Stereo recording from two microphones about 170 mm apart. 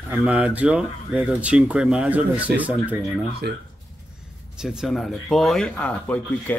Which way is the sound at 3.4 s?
70° right (ahead or behind).